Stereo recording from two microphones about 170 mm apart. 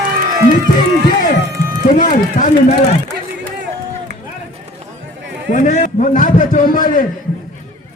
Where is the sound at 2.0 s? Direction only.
45° left (ahead or behind).